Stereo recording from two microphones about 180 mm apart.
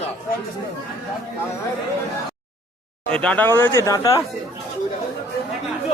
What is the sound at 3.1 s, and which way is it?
Speech, 5° left (ahead or behind).